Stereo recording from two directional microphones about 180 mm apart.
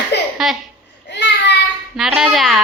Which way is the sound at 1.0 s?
70° left (ahead or behind).